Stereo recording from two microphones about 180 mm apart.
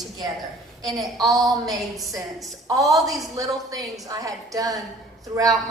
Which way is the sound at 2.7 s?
20° right (ahead or behind).